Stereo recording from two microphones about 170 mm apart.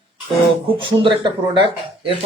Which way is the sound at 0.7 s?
30° right (ahead or behind).